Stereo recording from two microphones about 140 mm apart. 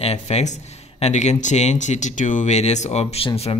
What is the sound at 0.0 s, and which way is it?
Speech, 50° left (ahead or behind).